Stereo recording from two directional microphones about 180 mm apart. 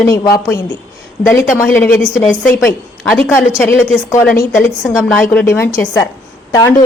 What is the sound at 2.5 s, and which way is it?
A woman's voice, 10° left (ahead or behind).